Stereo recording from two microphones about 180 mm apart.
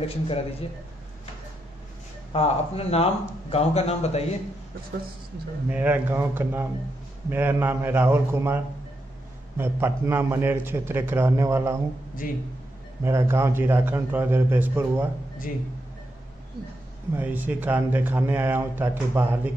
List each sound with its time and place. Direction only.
0.0 s a man's voice: 30° left (ahead or behind)
2.3 s a man's voice: 35° left (ahead or behind)
5.7 s speech: 10° right (ahead or behind)
9.6 s speech: 15° right (ahead or behind)
12.2 s a man's voice: 50° left (ahead or behind)
13.0 s speech: 15° right (ahead or behind)
17.1 s speech: 10° right (ahead or behind)